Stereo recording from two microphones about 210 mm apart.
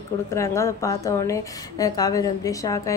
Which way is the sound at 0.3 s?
15° left (ahead or behind).